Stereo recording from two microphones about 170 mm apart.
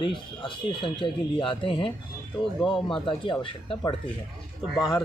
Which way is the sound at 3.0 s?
30° left (ahead or behind).